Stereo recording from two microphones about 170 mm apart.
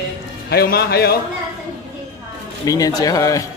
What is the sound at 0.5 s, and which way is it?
Speech, 65° left (ahead or behind).